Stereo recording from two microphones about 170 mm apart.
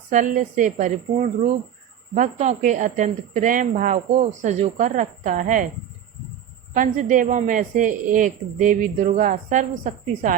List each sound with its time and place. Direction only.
0.1 s a woman's voice: 50° right (ahead or behind)
6.7 s a woman's voice: 50° right (ahead or behind)